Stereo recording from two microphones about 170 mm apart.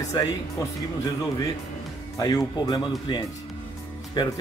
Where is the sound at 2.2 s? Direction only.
25° left (ahead or behind).